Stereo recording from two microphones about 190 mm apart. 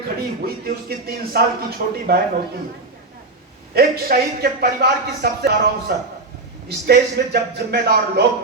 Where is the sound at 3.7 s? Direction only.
55° right (ahead or behind).